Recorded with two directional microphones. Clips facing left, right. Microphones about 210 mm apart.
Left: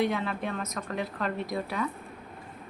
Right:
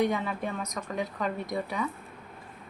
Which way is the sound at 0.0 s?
15° right (ahead or behind).